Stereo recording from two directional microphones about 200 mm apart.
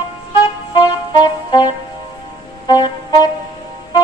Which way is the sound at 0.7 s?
20° left (ahead or behind).